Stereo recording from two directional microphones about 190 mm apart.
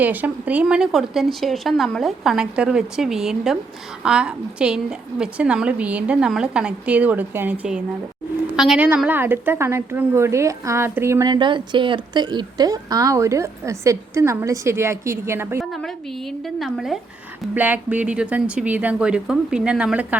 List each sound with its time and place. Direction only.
0.0 s a woman's voice: 10° right (ahead or behind)
15.7 s a woman's voice: centre (ahead or behind)